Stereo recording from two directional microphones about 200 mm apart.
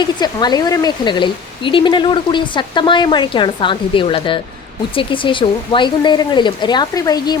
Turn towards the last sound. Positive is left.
turn(degrees=20)  # may be behind; listen again after turning